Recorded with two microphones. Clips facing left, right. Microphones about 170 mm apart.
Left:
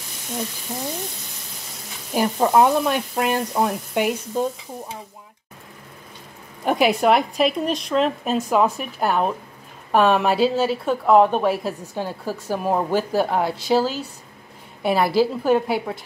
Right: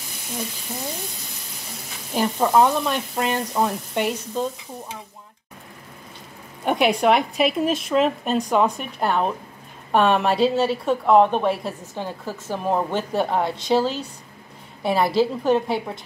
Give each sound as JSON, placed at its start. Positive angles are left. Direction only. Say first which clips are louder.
{"t": 2.1, "sound": "frying", "louder": "left 1 dB", "side_deg": 10}
{"t": 6.6, "sound": "speech", "louder": "left 1 dB", "side_deg": 0}